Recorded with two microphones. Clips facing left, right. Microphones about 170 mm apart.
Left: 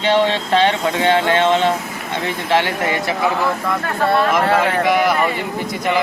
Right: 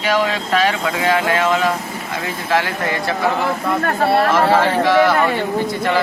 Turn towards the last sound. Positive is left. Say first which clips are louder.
# right 2 dB
turn(degrees=0)  # may be behind; listen again after turning